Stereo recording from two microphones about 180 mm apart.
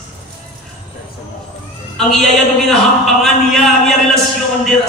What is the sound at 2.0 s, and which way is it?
Speech, centre (ahead or behind).